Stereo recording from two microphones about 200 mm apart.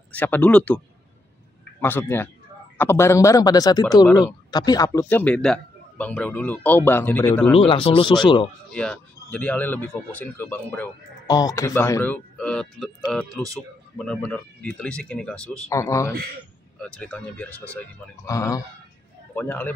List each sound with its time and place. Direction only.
0.1 s a man's voice: 10° left (ahead or behind)
1.8 s a man's voice: 10° left (ahead or behind)
7.5 s speech: 30° left (ahead or behind)
8.6 s a man's voice: 5° left (ahead or behind)